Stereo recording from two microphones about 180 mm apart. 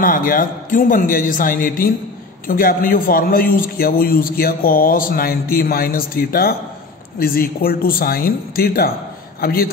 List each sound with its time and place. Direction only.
0.0 s a man's voice: 50° left (ahead or behind)